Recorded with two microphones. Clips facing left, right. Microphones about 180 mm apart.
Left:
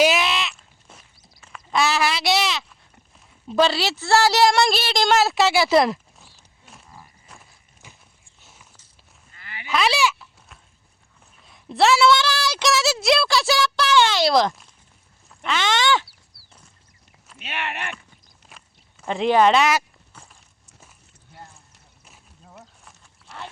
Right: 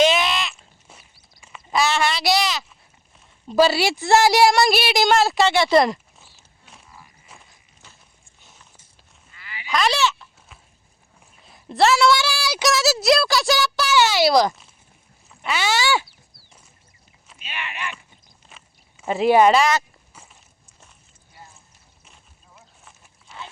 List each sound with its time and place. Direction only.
0.0 s sheep: 5° left (ahead or behind)
3.4 s a woman's voice: 5° right (ahead or behind)
5.0 s a sound: centre (ahead or behind)
9.3 s livestock: 50° left (ahead or behind)
9.6 s goat: 5° left (ahead or behind)
10.5 s clip-clop: centre (ahead or behind)
11.4 s a woman's voice: centre (ahead or behind)
15.3 s a sound: 10° right (ahead or behind)
17.3 s speech: 70° left (ahead or behind)
18.4 s a sound: 5° right (ahead or behind)